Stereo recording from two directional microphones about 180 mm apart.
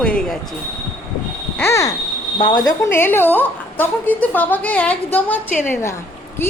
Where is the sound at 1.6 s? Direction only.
15° left (ahead or behind).